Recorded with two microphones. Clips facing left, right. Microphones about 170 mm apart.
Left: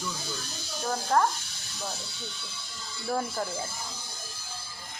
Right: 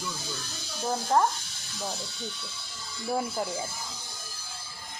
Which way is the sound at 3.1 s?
15° right (ahead or behind).